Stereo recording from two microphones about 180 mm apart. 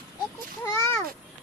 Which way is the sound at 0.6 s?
15° left (ahead or behind).